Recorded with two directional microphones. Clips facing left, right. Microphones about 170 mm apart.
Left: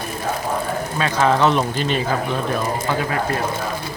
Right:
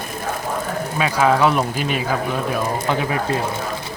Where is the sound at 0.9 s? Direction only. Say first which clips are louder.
Right 1 dB; 10° right (ahead or behind).